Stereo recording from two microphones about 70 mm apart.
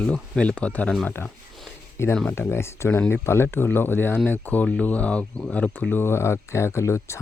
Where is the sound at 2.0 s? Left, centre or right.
Left.